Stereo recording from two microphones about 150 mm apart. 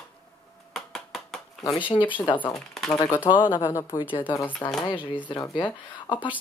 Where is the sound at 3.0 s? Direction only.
20° left (ahead or behind).